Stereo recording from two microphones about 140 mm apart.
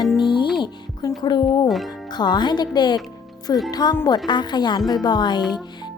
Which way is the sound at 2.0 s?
30° left (ahead or behind).